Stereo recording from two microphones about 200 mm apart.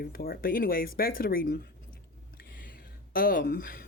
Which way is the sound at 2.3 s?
50° left (ahead or behind).